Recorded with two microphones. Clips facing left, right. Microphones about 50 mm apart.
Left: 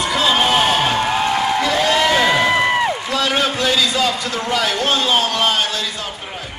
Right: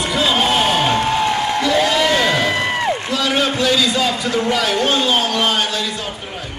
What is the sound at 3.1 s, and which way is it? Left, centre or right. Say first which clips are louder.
Speech: even; centre.